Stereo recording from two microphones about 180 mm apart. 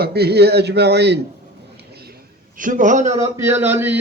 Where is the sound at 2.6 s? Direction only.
45° right (ahead or behind).